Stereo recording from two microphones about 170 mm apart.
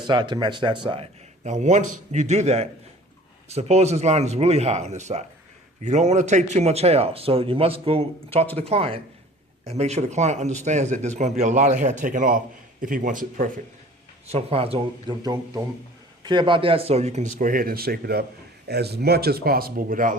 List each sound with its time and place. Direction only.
0.0 s speech: 25° right (ahead or behind)
1.5 s a man's voice: 45° right (ahead or behind)
14.3 s a man's voice: 35° right (ahead or behind)
15.2 s a man's voice: 20° right (ahead or behind); by 17.2 s 40° right (ahead or behind)
17.3 s speech: 50° right (ahead or behind)